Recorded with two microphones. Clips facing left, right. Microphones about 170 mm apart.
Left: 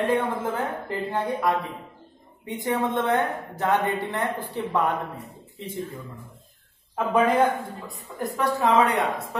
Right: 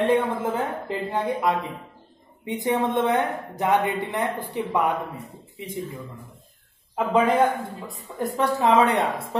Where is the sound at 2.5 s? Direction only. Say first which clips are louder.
Right 2 dB; 20° right (ahead or behind).